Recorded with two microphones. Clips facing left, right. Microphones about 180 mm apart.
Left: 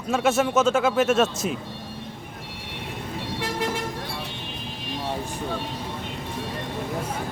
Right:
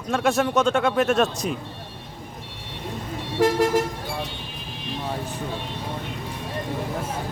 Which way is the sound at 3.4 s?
45° right (ahead or behind).